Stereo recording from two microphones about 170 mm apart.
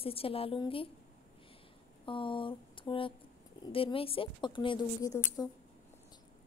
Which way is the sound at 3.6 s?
30° left (ahead or behind).